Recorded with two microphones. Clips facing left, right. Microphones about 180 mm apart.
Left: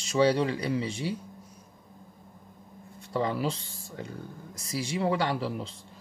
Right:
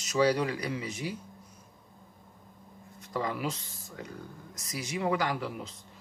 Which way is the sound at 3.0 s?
30° left (ahead or behind).